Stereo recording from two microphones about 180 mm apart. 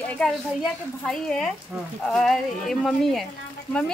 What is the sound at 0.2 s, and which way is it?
A woman's voice, 5° left (ahead or behind).